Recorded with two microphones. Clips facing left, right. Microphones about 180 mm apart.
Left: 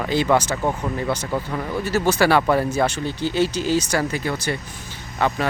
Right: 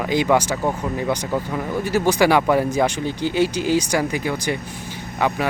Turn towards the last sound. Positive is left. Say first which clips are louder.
# right 1 dB
turn(degrees=-15)  # may be behind; listen again after turning